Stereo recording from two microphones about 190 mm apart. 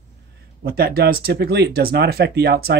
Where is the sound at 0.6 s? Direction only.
55° right (ahead or behind).